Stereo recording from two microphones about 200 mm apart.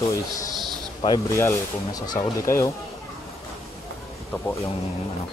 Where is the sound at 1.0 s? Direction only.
20° left (ahead or behind).